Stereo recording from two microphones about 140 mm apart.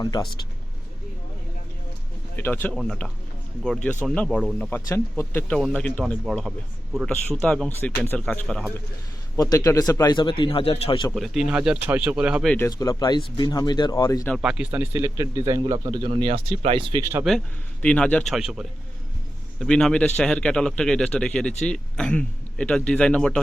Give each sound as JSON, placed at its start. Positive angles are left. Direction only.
{"t": 0.0, "sound": "speech", "side_deg": 30}
{"t": 2.3, "sound": "a man's voice", "side_deg": 15}
{"t": 9.4, "sound": "speech", "side_deg": 25}
{"t": 11.1, "sound": "a man's voice", "side_deg": 0}
{"t": 12.5, "sound": "speech", "side_deg": 20}
{"t": 14.3, "sound": "speech", "side_deg": -5}
{"t": 17.0, "sound": "speech", "side_deg": -20}
{"t": 17.8, "sound": "a man's voice", "side_deg": 10}